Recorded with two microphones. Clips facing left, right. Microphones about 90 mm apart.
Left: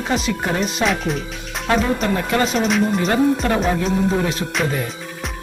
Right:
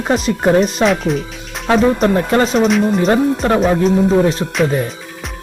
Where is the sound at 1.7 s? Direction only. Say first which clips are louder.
Right 6 dB; 40° right (ahead or behind).